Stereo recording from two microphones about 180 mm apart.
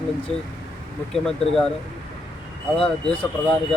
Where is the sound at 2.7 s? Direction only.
5° left (ahead or behind).